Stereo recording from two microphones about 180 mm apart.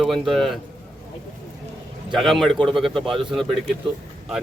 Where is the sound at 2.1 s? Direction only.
Centre (ahead or behind).